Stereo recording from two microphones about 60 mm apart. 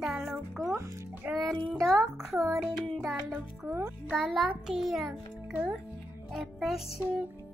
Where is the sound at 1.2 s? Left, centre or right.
Right.